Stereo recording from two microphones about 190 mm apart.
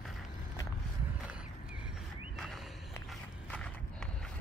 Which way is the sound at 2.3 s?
Centre (ahead or behind).